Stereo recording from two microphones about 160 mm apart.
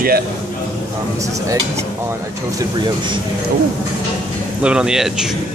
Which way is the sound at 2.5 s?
30° right (ahead or behind).